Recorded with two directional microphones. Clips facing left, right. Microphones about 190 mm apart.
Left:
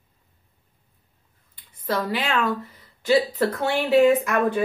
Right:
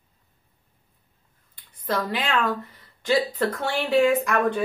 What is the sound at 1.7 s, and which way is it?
A woman's voice, 10° left (ahead or behind).